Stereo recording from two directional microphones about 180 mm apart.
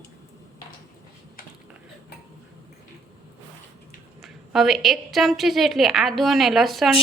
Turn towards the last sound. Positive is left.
turn(degrees=0)  # may be behind; listen again after turning